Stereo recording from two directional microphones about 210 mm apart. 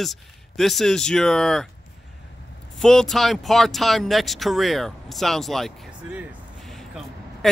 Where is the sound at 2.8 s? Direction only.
5° left (ahead or behind).